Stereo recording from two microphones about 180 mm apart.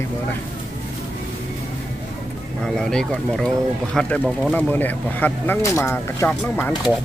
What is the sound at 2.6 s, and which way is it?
Speech, 5° left (ahead or behind).